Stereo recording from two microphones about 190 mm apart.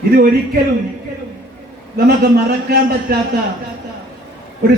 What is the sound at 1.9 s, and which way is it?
A man's voice, 55° right (ahead or behind).